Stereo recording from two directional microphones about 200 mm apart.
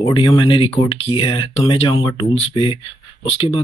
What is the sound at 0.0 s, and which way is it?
Speech, 25° left (ahead or behind).